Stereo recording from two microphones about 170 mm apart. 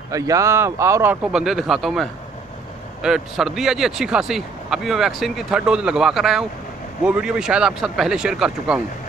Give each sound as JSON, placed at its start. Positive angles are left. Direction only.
{"t": 0.1, "sound": "speech", "side_deg": -20}
{"t": 1.2, "sound": "speech", "side_deg": -5}